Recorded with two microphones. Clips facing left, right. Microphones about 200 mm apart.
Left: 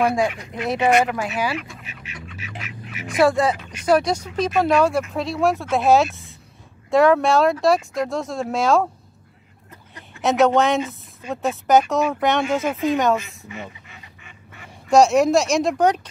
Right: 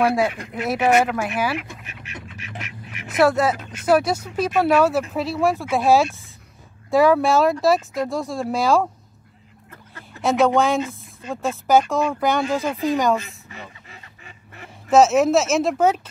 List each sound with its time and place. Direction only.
0.0 s speech: 5° right (ahead or behind)
1.5 s duck: 10° left (ahead or behind)
3.1 s speech: 5° right (ahead or behind)
10.2 s speech: centre (ahead or behind)
14.9 s speech: 5° right (ahead or behind)